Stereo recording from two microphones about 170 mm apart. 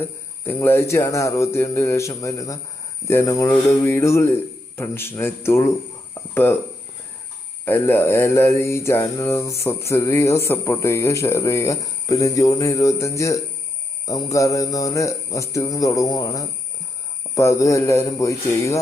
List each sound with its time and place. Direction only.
0.0 s mantra: 15° left (ahead or behind)
6.3 s speech: 15° left (ahead or behind)
7.6 s mantra: 15° left (ahead or behind)
14.3 s a man's voice: 20° left (ahead or behind)
17.3 s mantra: 15° left (ahead or behind)